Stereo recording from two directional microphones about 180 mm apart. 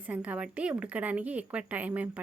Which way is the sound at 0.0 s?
10° right (ahead or behind).